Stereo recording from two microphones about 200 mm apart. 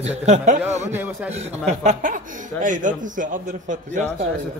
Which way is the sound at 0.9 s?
10° right (ahead or behind).